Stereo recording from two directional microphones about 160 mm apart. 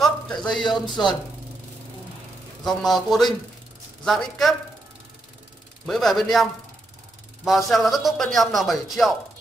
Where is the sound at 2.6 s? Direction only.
Centre (ahead or behind).